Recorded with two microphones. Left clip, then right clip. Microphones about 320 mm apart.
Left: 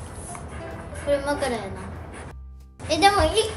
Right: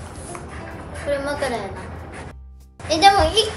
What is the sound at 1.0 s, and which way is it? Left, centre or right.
Child singing, centre.